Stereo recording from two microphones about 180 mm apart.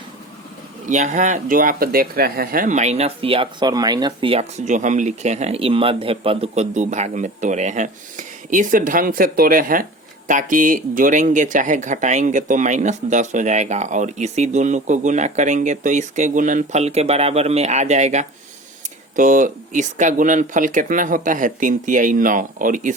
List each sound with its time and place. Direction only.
0.9 s speech: 40° right (ahead or behind)